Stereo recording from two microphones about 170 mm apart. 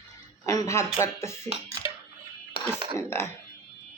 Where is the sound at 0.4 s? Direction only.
20° left (ahead or behind).